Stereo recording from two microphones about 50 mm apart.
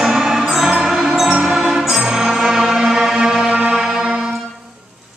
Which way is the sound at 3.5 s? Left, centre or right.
Right.